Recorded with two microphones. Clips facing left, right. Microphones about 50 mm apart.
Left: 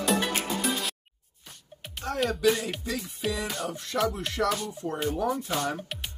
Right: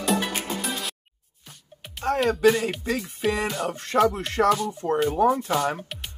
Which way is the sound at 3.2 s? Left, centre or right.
Centre.